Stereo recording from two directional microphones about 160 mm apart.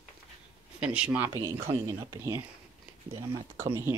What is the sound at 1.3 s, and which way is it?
Speech, 25° right (ahead or behind).